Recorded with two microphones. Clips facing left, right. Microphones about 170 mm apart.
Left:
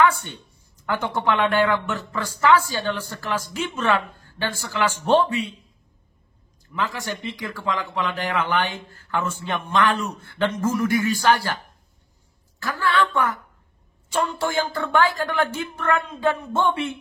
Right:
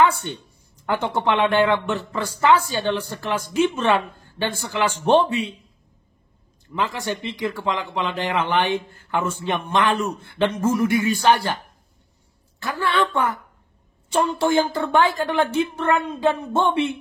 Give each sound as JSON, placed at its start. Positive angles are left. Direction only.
{"t": 0.8, "sound": "speech", "side_deg": -20}
{"t": 6.7, "sound": "speech", "side_deg": -25}
{"t": 12.6, "sound": "speech", "side_deg": -25}